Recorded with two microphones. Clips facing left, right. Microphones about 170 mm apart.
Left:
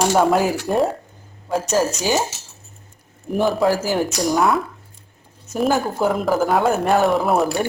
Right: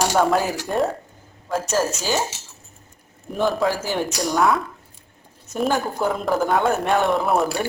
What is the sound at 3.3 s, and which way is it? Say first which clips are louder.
A woman's voice: left 3 dB; centre (ahead or behind).